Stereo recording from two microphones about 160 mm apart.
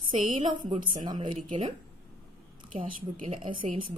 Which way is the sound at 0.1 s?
35° right (ahead or behind).